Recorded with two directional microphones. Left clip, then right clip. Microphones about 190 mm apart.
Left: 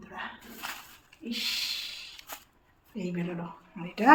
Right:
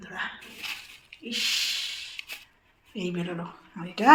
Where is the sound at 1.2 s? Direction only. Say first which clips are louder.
Right 5 dB; centre (ahead or behind).